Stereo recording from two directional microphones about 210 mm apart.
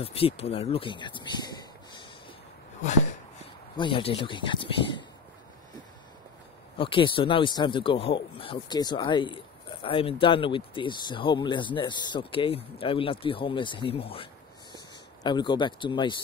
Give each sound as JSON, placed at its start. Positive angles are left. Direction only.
{"t": 0.0, "sound": "speech", "side_deg": 25}
{"t": 3.7, "sound": "speech", "side_deg": 25}
{"t": 6.8, "sound": "speech", "side_deg": 25}